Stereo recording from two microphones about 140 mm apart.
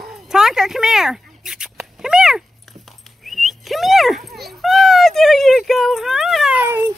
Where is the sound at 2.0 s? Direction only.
5° right (ahead or behind).